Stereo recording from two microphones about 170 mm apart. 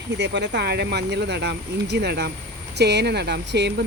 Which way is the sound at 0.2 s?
85° right.